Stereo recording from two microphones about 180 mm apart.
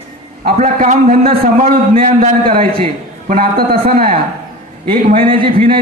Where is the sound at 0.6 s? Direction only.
45° right (ahead or behind).